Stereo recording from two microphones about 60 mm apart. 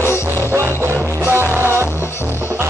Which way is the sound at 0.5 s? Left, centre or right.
Right.